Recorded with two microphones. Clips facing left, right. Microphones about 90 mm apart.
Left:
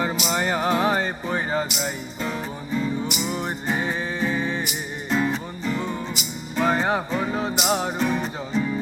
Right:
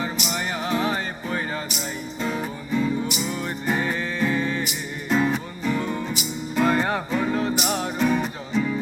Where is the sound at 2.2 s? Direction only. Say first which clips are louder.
Right 3 dB; centre (ahead or behind).